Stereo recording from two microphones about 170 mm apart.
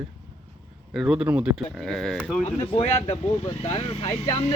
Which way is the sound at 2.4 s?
35° left (ahead or behind).